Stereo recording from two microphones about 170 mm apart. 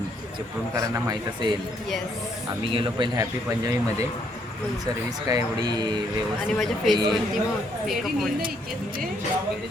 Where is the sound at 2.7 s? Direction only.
30° right (ahead or behind).